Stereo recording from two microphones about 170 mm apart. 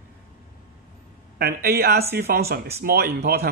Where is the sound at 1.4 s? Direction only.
65° right (ahead or behind).